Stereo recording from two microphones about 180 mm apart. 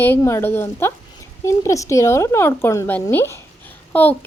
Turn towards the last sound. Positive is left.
turn(degrees=10)  # may be behind; listen again after turning